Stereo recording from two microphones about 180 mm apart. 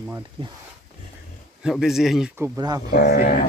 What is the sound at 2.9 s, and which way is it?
Speech, 60° left (ahead or behind).